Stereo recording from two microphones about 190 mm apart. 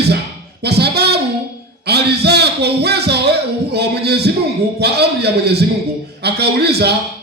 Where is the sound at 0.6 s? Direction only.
60° right (ahead or behind).